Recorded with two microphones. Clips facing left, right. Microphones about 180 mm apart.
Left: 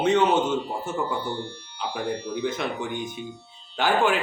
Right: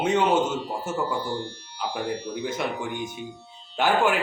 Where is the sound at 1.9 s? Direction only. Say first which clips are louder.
Left 1 dB; 10° right (ahead or behind).